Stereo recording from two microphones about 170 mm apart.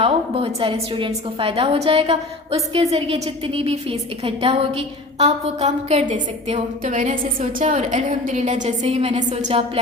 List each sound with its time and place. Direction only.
0.0 s a woman's voice: 35° right (ahead or behind)